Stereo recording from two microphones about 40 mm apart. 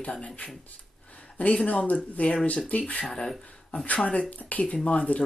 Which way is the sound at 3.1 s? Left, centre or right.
Centre.